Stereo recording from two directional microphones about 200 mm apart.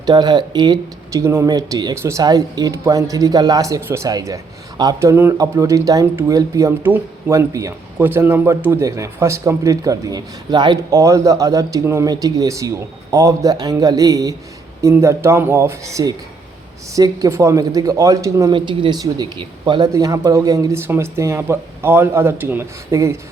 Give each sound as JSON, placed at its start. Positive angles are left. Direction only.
{"t": 0.0, "sound": "speech", "side_deg": -20}